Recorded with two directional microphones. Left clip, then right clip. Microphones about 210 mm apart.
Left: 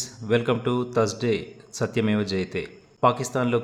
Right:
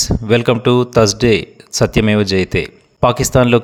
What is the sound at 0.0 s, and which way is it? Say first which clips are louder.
Speech: right 10 dB; 45° right (ahead or behind).